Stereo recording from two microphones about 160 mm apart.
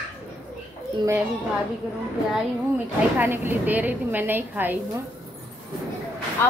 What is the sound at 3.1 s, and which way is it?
A woman's voice, 15° right (ahead or behind).